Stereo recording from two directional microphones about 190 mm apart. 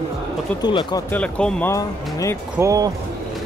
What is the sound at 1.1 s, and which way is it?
Speech, 5° left (ahead or behind).